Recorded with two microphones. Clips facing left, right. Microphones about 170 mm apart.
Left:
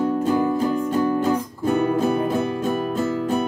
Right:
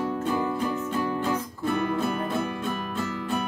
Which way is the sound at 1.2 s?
40° left (ahead or behind).